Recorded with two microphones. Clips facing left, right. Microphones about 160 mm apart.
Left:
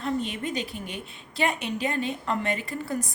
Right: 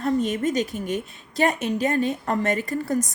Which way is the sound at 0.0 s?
45° right (ahead or behind).